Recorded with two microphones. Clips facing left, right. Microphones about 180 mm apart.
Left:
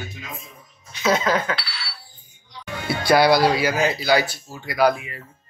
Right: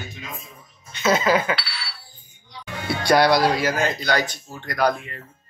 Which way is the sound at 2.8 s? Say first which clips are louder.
Left 1 dB; 5° left (ahead or behind).